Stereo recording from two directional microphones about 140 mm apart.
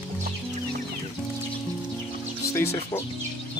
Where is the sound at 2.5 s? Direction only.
15° left (ahead or behind).